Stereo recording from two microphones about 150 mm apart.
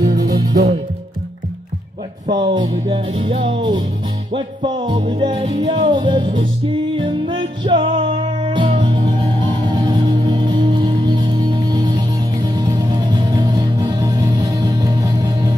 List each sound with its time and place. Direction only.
0.0 s music: 90° right
2.5 s music: 35° right (ahead or behind)